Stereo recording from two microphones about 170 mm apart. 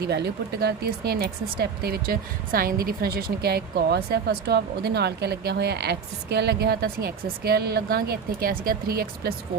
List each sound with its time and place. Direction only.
0.0 s speech: 75° right (ahead or behind)